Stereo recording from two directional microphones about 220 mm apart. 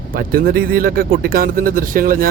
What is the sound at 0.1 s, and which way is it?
Speech, 40° right (ahead or behind).